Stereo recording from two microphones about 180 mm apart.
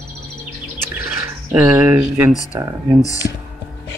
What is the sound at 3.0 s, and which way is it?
Speech, 20° left (ahead or behind).